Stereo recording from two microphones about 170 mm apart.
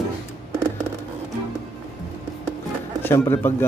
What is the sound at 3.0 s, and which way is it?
Speech, 15° left (ahead or behind).